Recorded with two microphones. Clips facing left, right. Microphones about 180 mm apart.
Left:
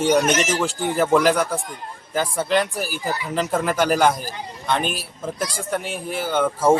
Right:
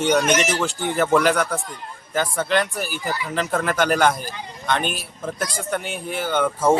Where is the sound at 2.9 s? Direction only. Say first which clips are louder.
Left 1 dB; 30° left (ahead or behind).